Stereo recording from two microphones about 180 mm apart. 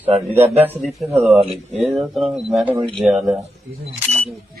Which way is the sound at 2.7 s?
30° right (ahead or behind).